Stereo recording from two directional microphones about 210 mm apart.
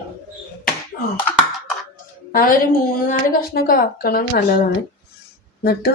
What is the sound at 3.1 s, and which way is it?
Speech, 40° left (ahead or behind).